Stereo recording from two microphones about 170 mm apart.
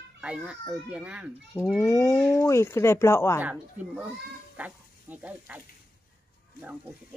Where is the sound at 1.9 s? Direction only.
15° left (ahead or behind).